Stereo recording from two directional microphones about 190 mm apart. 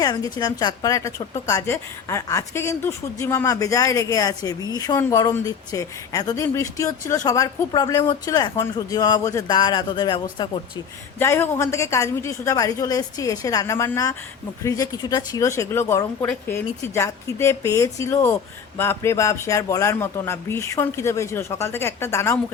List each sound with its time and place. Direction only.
0.0 s a woman's voice: 20° left (ahead or behind)
11.2 s a woman's voice: 10° left (ahead or behind)